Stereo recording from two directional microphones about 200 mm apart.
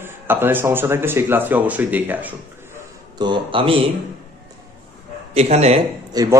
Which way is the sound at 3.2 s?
25° right (ahead or behind).